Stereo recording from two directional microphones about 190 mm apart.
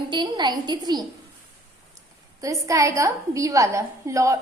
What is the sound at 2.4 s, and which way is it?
A woman's voice, 15° right (ahead or behind).